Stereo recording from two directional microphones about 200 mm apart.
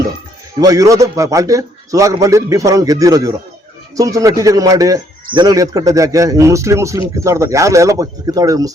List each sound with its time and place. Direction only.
0.6 s a man's voice: 15° right (ahead or behind)